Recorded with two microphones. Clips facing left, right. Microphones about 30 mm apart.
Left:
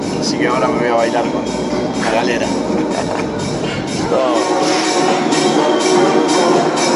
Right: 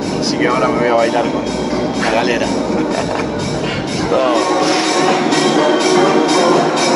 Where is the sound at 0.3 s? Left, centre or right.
Centre.